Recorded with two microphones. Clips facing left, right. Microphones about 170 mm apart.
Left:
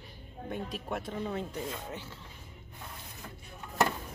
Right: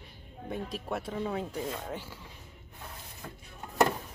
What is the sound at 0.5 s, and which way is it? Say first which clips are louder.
Speech: right 1 dB; 5° right (ahead or behind).